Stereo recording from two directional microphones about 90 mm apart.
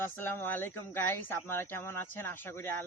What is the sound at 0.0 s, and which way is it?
Speech, 25° left (ahead or behind).